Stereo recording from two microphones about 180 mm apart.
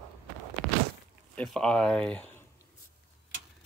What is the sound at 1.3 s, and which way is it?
Speech, 5° left (ahead or behind).